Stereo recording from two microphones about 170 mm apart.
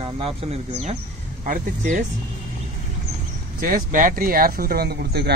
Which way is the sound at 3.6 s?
55° right (ahead or behind).